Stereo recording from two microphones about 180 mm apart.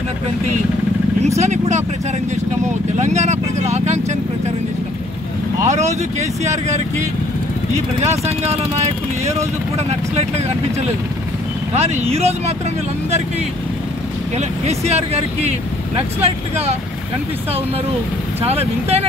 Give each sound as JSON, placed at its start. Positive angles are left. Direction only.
{"t": 1.4, "sound": "speech", "side_deg": -40}
{"t": 3.0, "sound": "speech", "side_deg": -40}
{"t": 5.7, "sound": "speech", "side_deg": -40}
{"t": 8.0, "sound": "speech", "side_deg": -35}
{"t": 14.3, "sound": "speech", "side_deg": -35}
{"t": 18.4, "sound": "speech", "side_deg": -35}